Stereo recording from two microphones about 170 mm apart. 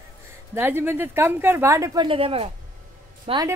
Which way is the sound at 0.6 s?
10° right (ahead or behind).